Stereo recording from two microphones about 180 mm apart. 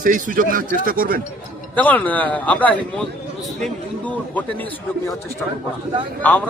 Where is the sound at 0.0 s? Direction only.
45° right (ahead or behind).